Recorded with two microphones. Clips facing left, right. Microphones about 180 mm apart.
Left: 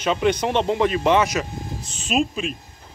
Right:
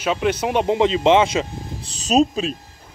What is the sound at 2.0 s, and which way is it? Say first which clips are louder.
Speech: right 5 dB; 40° right (ahead or behind).